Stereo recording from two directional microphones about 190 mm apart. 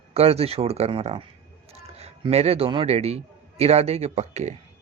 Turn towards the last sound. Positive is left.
turn(degrees=-35)  # may be behind; listen again after turning